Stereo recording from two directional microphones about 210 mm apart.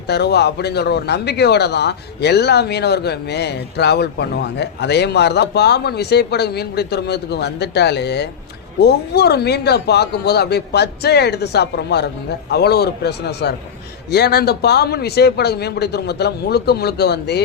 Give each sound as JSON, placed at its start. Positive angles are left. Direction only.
{"t": 0.1, "sound": "speech", "side_deg": 50}